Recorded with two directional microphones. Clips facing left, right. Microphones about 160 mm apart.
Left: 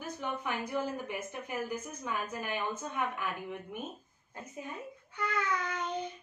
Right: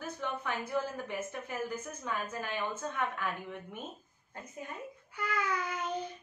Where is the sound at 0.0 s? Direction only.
15° left (ahead or behind).